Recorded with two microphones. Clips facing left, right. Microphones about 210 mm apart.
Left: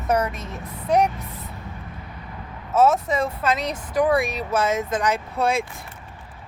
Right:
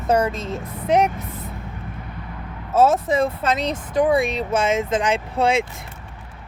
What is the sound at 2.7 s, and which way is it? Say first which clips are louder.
Speech: right 2 dB; 30° right (ahead or behind).